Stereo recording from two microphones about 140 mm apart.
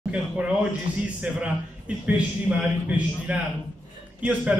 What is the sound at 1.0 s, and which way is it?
A man's voice, 10° right (ahead or behind).